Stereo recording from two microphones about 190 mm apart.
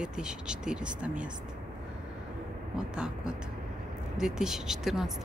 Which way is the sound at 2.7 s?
5° right (ahead or behind).